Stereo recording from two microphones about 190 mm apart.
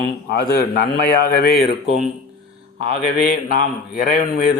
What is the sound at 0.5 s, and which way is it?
A man's voice, 55° left (ahead or behind).